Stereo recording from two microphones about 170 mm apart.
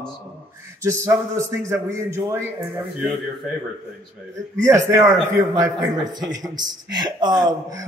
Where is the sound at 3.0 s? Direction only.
Centre (ahead or behind).